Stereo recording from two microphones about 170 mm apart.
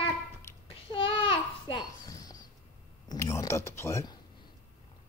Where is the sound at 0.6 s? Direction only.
30° left (ahead or behind).